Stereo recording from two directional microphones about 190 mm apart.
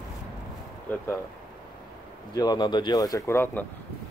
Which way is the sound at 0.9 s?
10° left (ahead or behind).